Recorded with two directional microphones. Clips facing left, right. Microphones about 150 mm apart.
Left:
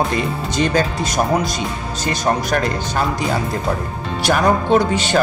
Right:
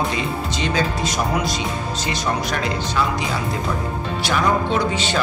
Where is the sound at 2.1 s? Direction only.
50° left (ahead or behind).